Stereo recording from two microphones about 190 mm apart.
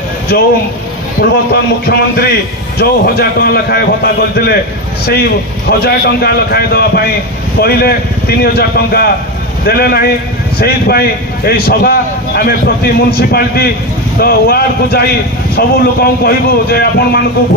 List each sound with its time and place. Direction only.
1.2 s a man's voice: 60° left (ahead or behind)
5.7 s a man's voice: 55° left (ahead or behind)